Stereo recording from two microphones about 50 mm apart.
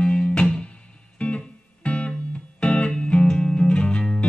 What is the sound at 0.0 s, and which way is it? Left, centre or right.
Music, centre.